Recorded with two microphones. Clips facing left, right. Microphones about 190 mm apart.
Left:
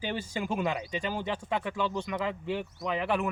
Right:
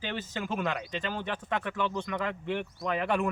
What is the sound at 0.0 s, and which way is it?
Speech, 10° left (ahead or behind).